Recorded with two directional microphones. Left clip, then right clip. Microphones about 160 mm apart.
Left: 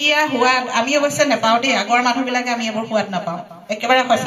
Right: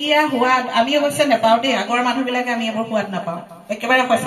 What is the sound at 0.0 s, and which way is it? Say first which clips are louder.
A woman's voice: left 1 dB; 40° left (ahead or behind).